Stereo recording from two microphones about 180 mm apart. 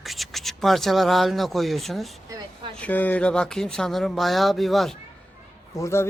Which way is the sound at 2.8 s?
10° left (ahead or behind).